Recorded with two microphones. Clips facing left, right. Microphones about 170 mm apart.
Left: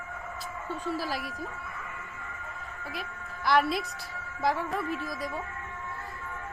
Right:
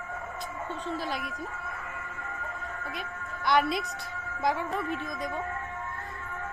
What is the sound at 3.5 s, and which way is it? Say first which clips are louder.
A woman's voice: even; centre (ahead or behind).